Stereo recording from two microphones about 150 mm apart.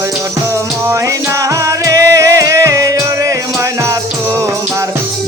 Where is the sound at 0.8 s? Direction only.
20° right (ahead or behind).